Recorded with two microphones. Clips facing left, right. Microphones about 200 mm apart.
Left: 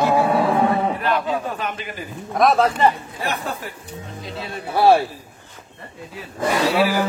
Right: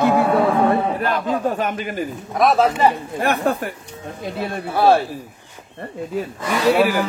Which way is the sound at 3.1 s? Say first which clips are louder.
Right 7 dB; 55° right (ahead or behind).